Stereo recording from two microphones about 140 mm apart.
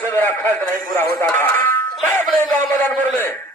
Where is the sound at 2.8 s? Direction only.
15° left (ahead or behind).